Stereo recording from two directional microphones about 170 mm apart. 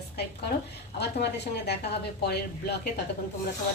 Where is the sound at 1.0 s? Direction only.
75° left (ahead or behind).